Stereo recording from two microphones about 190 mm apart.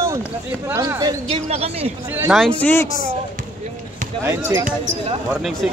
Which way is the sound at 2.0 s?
10° right (ahead or behind).